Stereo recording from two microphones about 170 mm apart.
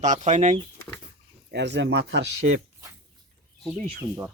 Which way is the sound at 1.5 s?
90° right.